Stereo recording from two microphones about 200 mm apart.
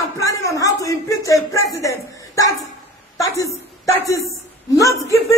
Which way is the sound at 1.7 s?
15° left (ahead or behind).